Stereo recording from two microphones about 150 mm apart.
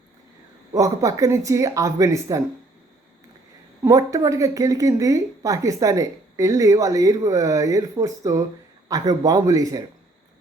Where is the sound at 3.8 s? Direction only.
20° right (ahead or behind).